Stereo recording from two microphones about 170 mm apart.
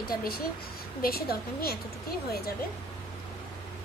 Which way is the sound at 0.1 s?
60° left (ahead or behind).